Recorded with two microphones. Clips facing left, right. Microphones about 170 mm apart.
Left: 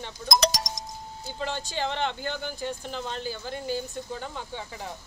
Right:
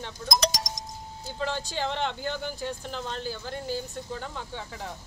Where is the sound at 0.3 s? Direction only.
65° left (ahead or behind).